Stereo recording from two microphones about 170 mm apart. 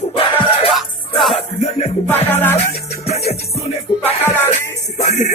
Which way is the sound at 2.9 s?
40° left (ahead or behind).